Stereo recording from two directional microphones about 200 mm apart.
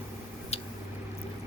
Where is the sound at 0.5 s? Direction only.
30° left (ahead or behind).